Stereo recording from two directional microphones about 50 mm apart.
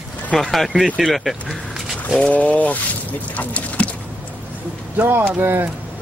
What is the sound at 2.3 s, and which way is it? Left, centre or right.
Speech, left.